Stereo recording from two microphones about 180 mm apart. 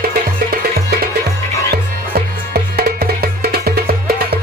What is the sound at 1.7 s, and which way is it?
Music, 60° right (ahead or behind).